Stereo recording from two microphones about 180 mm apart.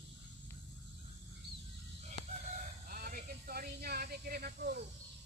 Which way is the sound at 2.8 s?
50° right (ahead or behind).